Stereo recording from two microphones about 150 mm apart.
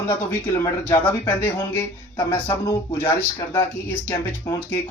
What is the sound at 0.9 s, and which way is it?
Speech, 10° left (ahead or behind).